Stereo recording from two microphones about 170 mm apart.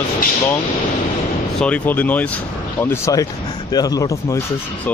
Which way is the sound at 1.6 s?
10° left (ahead or behind).